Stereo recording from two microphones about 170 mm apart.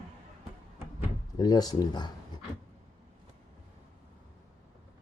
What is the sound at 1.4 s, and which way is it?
Speech, 25° left (ahead or behind).